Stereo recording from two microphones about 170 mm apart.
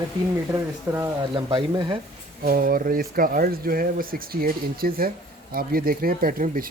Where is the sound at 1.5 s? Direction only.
30° right (ahead or behind).